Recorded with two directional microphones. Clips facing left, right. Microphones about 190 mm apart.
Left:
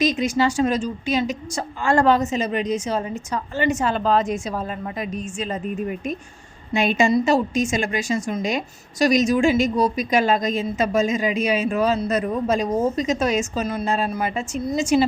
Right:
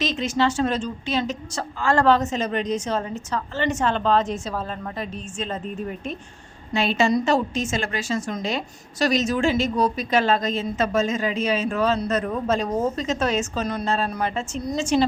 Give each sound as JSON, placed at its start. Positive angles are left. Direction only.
{"t": 0.0, "sound": "speech", "side_deg": 10}